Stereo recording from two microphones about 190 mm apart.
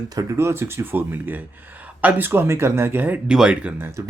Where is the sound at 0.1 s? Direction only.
15° right (ahead or behind).